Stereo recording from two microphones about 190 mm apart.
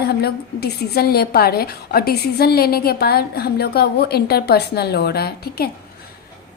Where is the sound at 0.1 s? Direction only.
55° left (ahead or behind).